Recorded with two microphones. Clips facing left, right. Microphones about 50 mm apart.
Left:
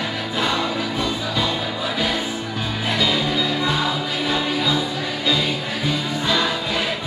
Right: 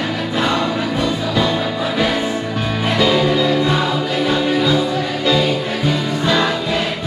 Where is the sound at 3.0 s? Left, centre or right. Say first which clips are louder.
Right 7 dB; right.